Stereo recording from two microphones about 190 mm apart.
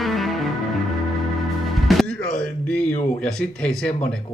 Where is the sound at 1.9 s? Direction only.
5° left (ahead or behind).